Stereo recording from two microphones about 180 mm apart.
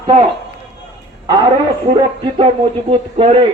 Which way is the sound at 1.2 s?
25° right (ahead or behind).